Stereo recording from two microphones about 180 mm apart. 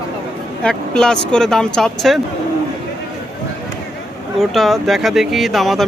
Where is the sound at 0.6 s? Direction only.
5° left (ahead or behind).